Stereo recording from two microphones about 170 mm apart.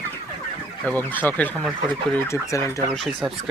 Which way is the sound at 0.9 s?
10° left (ahead or behind).